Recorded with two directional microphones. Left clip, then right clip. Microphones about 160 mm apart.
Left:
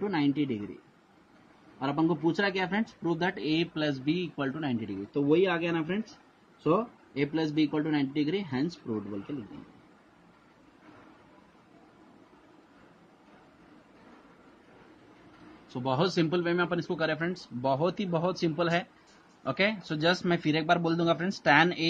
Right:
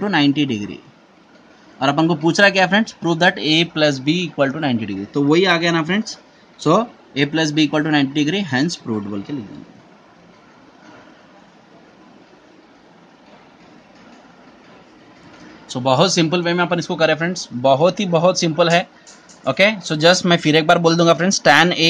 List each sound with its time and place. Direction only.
0.0 s speech: 45° right (ahead or behind)
1.8 s speech: 45° right (ahead or behind)
5.1 s speech: 50° right (ahead or behind)
15.7 s speech: 30° right (ahead or behind)